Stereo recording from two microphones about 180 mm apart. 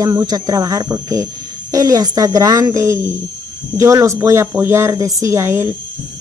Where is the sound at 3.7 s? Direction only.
15° right (ahead or behind).